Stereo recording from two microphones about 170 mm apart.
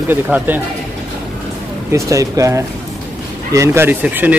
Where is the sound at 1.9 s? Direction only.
20° right (ahead or behind).